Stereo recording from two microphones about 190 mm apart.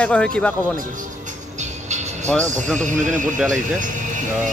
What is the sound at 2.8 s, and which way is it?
Speech, 40° right (ahead or behind).